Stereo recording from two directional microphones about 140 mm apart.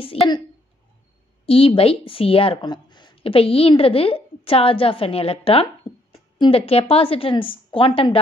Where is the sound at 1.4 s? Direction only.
40° left (ahead or behind).